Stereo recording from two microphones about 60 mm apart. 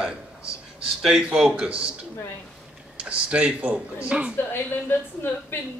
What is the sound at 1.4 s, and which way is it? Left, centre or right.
Speech, centre.